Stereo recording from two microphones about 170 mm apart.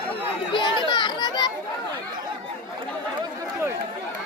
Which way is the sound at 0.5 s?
30° left (ahead or behind).